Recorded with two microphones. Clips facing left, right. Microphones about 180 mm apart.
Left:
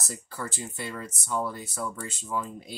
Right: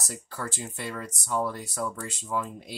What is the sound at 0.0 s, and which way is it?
Speech, centre (ahead or behind).